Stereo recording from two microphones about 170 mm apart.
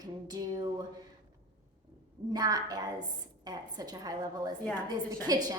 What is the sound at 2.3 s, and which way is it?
A woman's voice, 20° right (ahead or behind).